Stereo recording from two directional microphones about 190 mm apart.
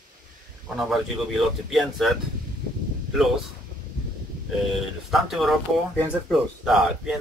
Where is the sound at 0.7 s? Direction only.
Centre (ahead or behind).